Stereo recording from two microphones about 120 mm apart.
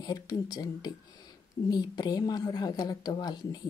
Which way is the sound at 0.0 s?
35° left (ahead or behind).